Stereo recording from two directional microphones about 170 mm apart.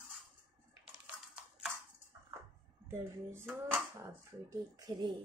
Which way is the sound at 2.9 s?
15° right (ahead or behind).